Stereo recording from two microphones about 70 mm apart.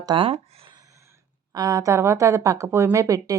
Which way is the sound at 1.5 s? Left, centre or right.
Right.